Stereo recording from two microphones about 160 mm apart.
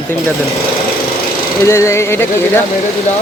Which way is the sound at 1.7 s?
20° left (ahead or behind).